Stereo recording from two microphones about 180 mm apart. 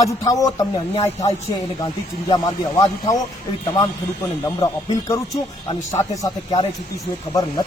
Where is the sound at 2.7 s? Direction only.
20° left (ahead or behind).